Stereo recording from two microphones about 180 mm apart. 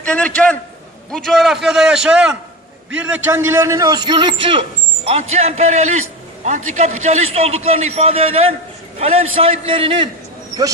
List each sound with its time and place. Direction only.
0.0 s a man's voice: 5° left (ahead or behind); by 4.6 s 25° right (ahead or behind)
5.3 s a man's voice: 35° right (ahead or behind)